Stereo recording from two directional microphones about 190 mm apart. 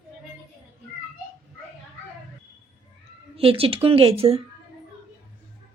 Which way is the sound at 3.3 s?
30° right (ahead or behind).